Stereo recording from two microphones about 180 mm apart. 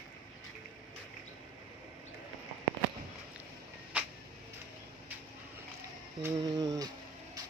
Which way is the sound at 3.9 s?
5° right (ahead or behind).